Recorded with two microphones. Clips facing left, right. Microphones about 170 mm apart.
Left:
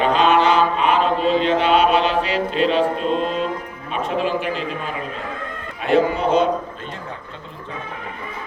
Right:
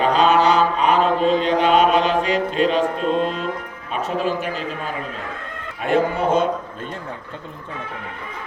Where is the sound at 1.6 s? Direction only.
45° right (ahead or behind).